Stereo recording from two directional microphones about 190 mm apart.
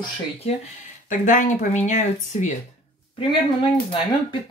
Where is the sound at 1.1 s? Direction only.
45° left (ahead or behind).